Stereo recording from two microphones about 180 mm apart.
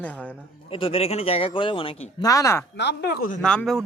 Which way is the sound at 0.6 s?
30° left (ahead or behind).